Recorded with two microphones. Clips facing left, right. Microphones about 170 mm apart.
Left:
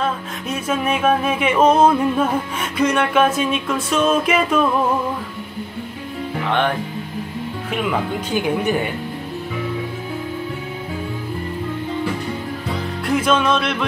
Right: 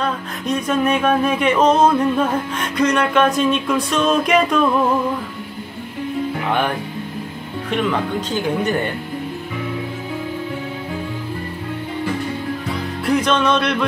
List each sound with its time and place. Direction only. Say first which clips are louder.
0.0 s music: right 1 dB; 5° left (ahead or behind)
8.3 s speech: left 2 dB; 10° left (ahead or behind)
13.0 s music: right 1 dB; 5° left (ahead or behind)